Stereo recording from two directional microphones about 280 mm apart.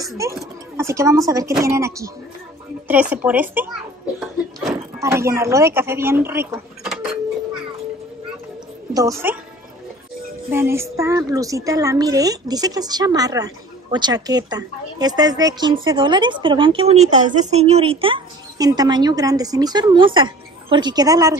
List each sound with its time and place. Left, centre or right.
0.0 s a woman's voice: centre
4.2 s a sound: centre
5.0 s speech: centre
8.9 s a woman's voice: centre
10.5 s a woman's voice: centre